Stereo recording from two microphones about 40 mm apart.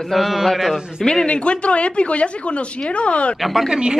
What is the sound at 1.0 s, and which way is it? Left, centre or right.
Speech, left.